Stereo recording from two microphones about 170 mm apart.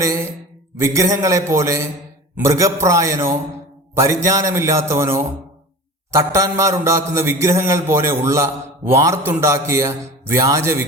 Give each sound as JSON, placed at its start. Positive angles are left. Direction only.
{"t": 0.0, "sound": "a man's voice", "side_deg": -20}